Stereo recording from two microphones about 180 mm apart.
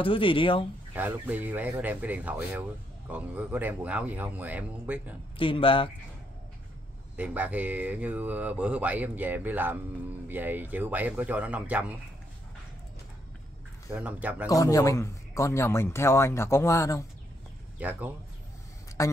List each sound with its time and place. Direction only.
0.0 s speech: 30° left (ahead or behind)
0.9 s speech: 10° right (ahead or behind)
5.4 s speech: 30° left (ahead or behind)
7.2 s speech: 5° right (ahead or behind)
13.9 s speech: 10° right (ahead or behind)
14.5 s a man's voice: 20° left (ahead or behind)
17.7 s speech: 10° right (ahead or behind)
19.0 s a man's voice: 15° left (ahead or behind)